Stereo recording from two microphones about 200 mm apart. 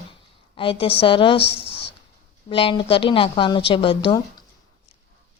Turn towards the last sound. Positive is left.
turn(degrees=25)  # may be behind; listen again after turning